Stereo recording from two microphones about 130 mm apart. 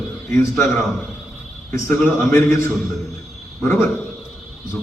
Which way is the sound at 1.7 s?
15° left (ahead or behind).